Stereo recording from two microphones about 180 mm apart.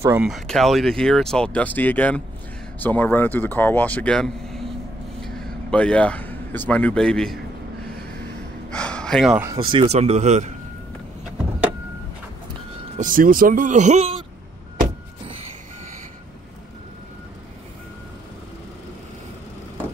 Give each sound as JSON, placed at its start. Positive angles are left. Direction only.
{"t": 0.0, "sound": "speech", "side_deg": -10}
{"t": 8.6, "sound": "gasp", "side_deg": 5}
{"t": 9.6, "sound": "speech", "side_deg": -30}
{"t": 12.9, "sound": "speech", "side_deg": -50}